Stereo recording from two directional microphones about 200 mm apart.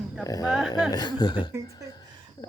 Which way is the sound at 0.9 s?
20° left (ahead or behind).